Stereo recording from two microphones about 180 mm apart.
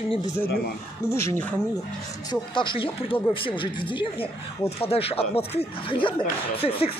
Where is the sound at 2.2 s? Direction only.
25° left (ahead or behind).